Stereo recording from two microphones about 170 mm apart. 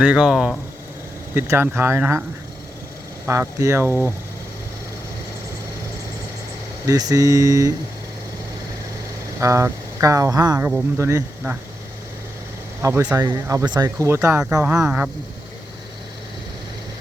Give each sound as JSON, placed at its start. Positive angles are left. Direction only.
{"t": 0.0, "sound": "speech", "side_deg": -5}
{"t": 3.2, "sound": "speech", "side_deg": -15}
{"t": 3.8, "sound": "speech", "side_deg": 15}
{"t": 6.8, "sound": "speech", "side_deg": -20}
{"t": 9.4, "sound": "speech", "side_deg": -15}
{"t": 12.8, "sound": "speech", "side_deg": -15}